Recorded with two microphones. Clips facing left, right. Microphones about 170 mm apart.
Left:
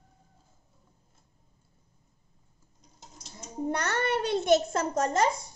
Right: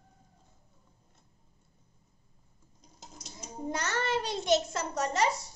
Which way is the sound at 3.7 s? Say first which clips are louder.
Left 2 dB; 60° left (ahead or behind).